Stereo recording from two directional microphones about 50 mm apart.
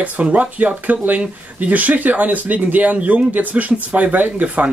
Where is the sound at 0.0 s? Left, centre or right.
Right.